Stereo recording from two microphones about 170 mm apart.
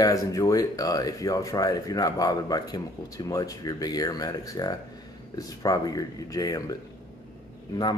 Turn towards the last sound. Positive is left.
turn(degrees=25)  # may be behind; listen again after turning